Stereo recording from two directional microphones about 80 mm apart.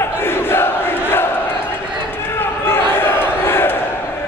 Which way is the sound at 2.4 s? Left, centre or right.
Left.